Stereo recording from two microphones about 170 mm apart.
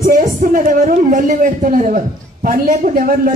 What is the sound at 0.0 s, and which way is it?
A man's voice, 50° right (ahead or behind).